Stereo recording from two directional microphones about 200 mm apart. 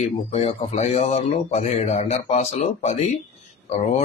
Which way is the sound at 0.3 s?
30° left (ahead or behind).